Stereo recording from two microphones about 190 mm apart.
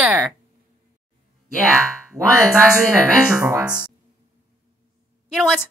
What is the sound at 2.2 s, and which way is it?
Speech, 15° right (ahead or behind).